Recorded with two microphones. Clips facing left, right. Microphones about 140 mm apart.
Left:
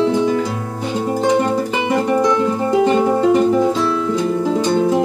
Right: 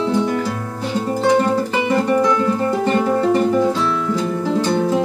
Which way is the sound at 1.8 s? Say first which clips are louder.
Left 1 dB; 15° left (ahead or behind).